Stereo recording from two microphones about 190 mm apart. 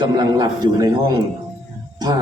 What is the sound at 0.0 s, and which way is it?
Music, 20° right (ahead or behind).